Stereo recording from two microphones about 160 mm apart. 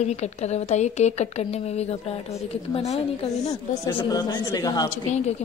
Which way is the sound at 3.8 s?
25° left (ahead or behind).